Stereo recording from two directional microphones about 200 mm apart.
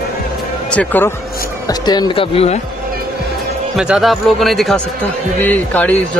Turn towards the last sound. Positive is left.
turn(degrees=10)  # may be behind; listen again after turning